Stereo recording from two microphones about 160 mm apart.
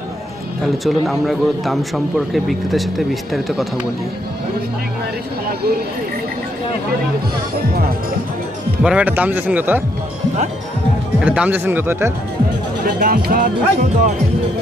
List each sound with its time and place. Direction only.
0.8 s speech: centre (ahead or behind)
8.8 s speech: 10° right (ahead or behind)
11.2 s speech: 10° right (ahead or behind)
13.0 s speech: 65° right (ahead or behind)